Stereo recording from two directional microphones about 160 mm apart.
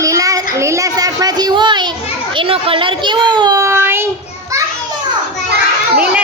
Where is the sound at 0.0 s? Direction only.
20° right (ahead or behind).